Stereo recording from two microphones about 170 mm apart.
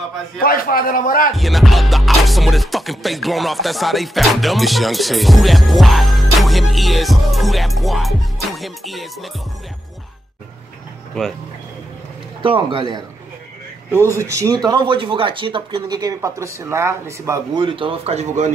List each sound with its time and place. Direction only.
0.4 s a man's voice: 60° left (ahead or behind)
1.3 s music: centre (ahead or behind)
11.2 s music: 5° left (ahead or behind)
12.4 s speech: 30° right (ahead or behind)
14.1 s speech: 20° right (ahead or behind)
17.6 s speech: 30° right (ahead or behind)